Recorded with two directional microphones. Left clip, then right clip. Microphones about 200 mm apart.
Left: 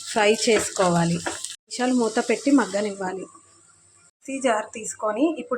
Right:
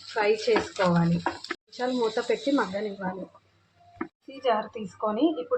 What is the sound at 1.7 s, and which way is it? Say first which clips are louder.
Speech: left 4 dB; 50° left (ahead or behind).